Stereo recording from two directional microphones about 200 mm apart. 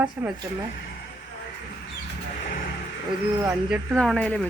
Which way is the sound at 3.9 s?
5° left (ahead or behind).